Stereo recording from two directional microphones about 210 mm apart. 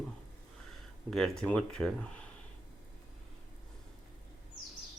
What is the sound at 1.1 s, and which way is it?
Speech, centre (ahead or behind).